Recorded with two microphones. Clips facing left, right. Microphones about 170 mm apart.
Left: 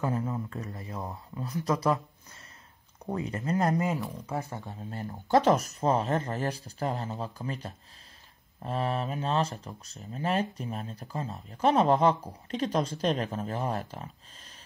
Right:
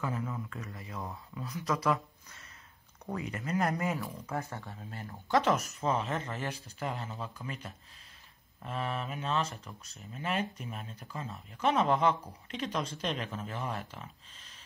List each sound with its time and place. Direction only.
0.0 s speech: 30° left (ahead or behind)
3.7 s speech: 15° left (ahead or behind)
4.7 s speech: 35° left (ahead or behind)